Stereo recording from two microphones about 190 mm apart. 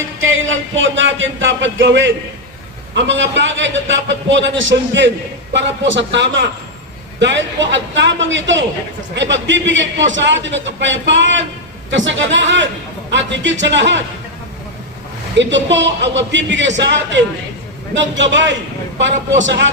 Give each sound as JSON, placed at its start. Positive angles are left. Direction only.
{"t": 0.2, "sound": "a man's voice", "side_deg": -90}
{"t": 15.4, "sound": "a man's voice", "side_deg": -70}